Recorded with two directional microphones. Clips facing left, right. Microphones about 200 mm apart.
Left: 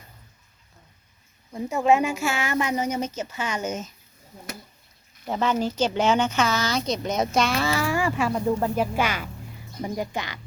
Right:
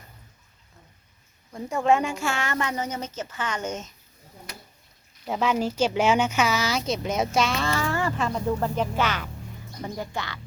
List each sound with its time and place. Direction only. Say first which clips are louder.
1.5 s speech: left 2 dB; 5° left (ahead or behind)
5.2 s speech: even; 5° right (ahead or behind); by 10.4 s 15° left (ahead or behind)